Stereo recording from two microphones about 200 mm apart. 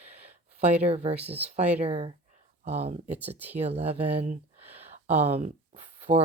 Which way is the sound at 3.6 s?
30° right (ahead or behind).